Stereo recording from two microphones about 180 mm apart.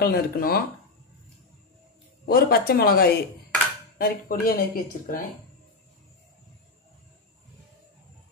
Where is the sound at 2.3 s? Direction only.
55° left (ahead or behind).